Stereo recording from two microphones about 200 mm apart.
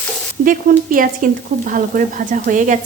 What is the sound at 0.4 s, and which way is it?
Speech, 45° right (ahead or behind).